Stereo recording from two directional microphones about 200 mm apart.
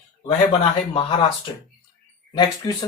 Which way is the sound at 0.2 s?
25° left (ahead or behind).